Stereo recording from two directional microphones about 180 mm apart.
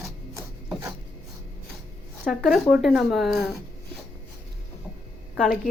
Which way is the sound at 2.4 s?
5° right (ahead or behind).